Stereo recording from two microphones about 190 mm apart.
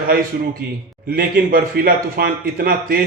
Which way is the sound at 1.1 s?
50° right (ahead or behind).